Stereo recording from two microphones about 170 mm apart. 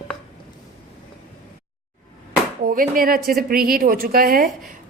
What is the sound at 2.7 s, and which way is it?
A woman's voice, 55° right (ahead or behind).